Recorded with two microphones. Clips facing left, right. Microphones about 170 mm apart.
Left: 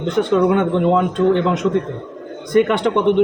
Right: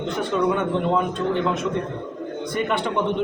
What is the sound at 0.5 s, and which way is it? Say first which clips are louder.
A man's voice: left 6 dB; 90° left.